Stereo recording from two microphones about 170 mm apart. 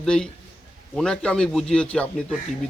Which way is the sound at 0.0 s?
5° left (ahead or behind).